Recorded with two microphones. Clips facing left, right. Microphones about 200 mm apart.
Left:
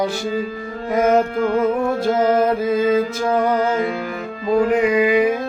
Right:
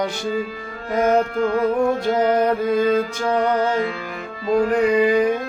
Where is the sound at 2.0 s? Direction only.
40° left (ahead or behind).